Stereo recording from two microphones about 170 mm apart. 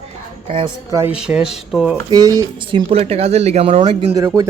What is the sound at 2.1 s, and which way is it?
Speech, 20° right (ahead or behind).